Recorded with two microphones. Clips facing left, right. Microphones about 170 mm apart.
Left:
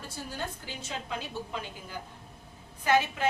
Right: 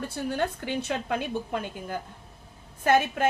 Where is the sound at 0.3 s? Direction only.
65° right (ahead or behind).